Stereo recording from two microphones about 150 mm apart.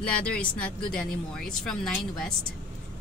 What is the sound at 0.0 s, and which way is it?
Speech, 10° left (ahead or behind).